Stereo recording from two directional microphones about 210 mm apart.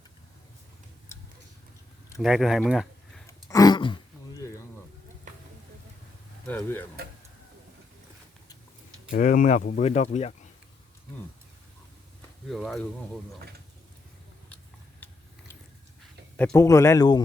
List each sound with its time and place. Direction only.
2.2 s speech: centre (ahead or behind)
3.2 s a sound: 15° left (ahead or behind)
6.5 s speech: 10° left (ahead or behind)
9.1 s speech: 40° left (ahead or behind)
12.5 s speech: centre (ahead or behind)
16.4 s speech: 10° left (ahead or behind)